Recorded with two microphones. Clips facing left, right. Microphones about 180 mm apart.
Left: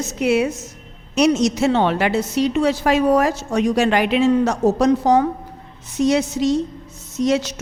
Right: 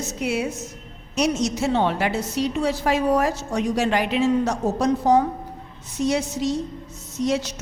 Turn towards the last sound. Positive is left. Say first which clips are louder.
# left 4 dB
turn(degrees=75)  # may be behind; listen again after turning